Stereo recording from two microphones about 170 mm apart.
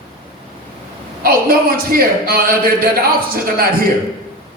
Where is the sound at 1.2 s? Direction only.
60° right (ahead or behind).